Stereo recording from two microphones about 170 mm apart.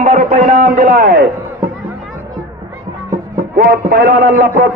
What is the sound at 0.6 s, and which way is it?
Speech, 50° right (ahead or behind).